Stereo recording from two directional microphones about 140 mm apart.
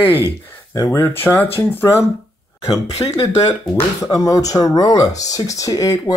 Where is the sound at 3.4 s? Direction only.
45° left (ahead or behind).